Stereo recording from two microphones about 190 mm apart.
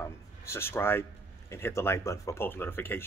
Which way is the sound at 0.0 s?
15° left (ahead or behind).